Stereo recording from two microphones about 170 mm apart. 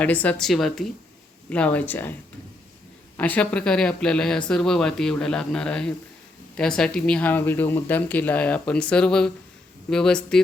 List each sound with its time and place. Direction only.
0.0 s speech: 10° left (ahead or behind)
3.2 s speech: 10° left (ahead or behind)